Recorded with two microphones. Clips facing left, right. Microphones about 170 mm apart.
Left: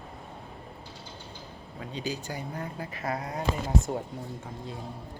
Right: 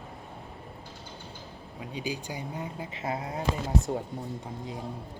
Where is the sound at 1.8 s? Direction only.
10° right (ahead or behind).